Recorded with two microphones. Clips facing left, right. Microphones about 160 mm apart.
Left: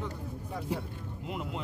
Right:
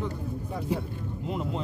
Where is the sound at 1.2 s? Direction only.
35° right (ahead or behind).